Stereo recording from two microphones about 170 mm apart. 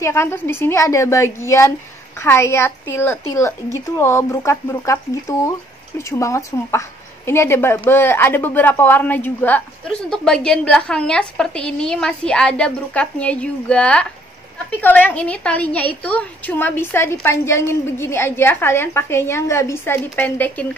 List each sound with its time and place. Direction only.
0.0 s a woman's voice: 15° left (ahead or behind)